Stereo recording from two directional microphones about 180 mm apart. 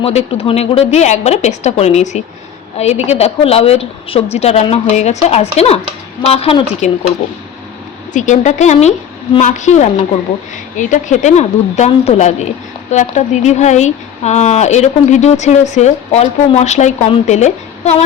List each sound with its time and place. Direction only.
0.0 s speech: 35° left (ahead or behind)
8.1 s speech: 40° left (ahead or behind)